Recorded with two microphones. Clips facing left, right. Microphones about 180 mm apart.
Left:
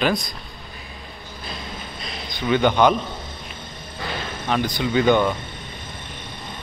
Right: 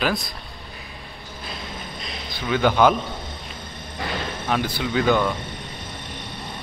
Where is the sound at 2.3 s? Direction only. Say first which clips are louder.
Left 2 dB; 5° right (ahead or behind).